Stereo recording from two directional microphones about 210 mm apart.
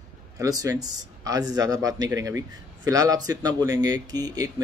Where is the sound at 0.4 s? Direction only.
15° right (ahead or behind).